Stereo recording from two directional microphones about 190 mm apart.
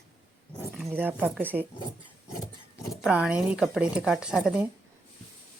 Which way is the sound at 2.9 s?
5° right (ahead or behind).